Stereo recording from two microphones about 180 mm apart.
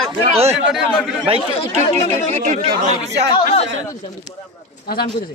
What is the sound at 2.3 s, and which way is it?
Speech, 40° right (ahead or behind).